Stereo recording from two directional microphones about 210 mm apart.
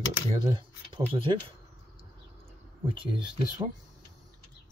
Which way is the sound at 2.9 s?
25° right (ahead or behind).